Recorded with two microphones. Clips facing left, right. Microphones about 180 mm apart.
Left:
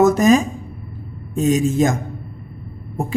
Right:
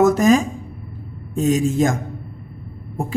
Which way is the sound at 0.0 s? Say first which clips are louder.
Left 1 dB; 20° left (ahead or behind).